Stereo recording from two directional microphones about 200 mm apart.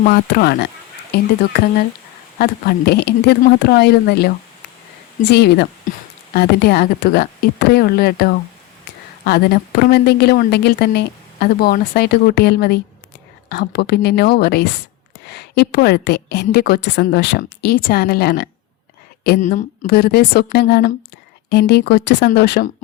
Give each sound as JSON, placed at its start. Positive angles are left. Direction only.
{"t": 0.1, "sound": "a woman's voice", "side_deg": 55}
{"t": 2.4, "sound": "speech", "side_deg": 50}
{"t": 5.3, "sound": "a woman's voice", "side_deg": 55}
{"t": 19.4, "sound": "a woman's voice", "side_deg": 35}